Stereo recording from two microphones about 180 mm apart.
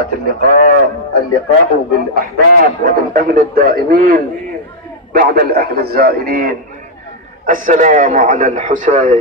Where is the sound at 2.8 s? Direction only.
55° right (ahead or behind).